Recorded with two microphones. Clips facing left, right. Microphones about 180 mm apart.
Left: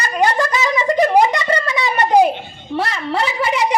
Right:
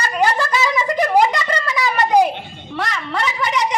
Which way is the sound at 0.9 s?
25° left (ahead or behind).